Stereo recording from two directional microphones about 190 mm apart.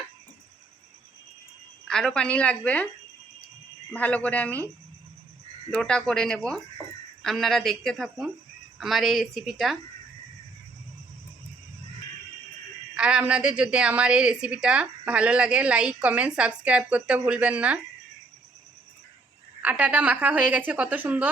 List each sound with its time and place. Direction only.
1.9 s a woman's voice: 5° left (ahead or behind)
3.9 s speech: 5° left (ahead or behind)
5.7 s a woman's voice: 5° left (ahead or behind)
12.9 s a woman's voice: 5° right (ahead or behind)
19.6 s a woman's voice: 10° right (ahead or behind)